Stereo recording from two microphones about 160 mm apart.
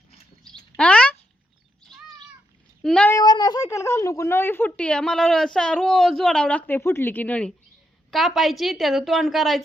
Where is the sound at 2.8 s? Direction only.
5° left (ahead or behind).